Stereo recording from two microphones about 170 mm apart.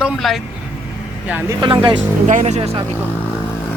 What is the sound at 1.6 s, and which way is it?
Speech, 30° right (ahead or behind).